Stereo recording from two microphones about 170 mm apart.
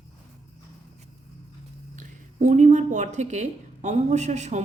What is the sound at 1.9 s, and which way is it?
A woman's voice, 50° right (ahead or behind).